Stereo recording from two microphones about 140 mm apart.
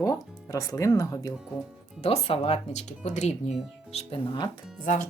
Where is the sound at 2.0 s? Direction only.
45° left (ahead or behind).